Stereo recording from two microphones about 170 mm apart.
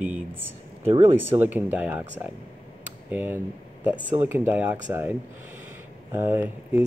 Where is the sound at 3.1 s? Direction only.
10° right (ahead or behind).